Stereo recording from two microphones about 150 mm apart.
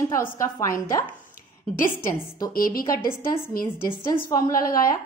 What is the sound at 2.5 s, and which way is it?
Speech, 75° left (ahead or behind).